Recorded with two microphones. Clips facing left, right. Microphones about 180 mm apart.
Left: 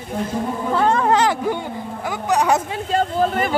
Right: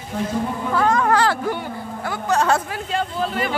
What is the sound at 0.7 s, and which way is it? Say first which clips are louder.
Speech: left 1 dB; 30° left (ahead or behind).